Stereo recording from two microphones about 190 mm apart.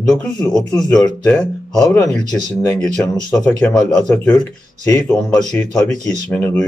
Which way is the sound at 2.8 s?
5° left (ahead or behind).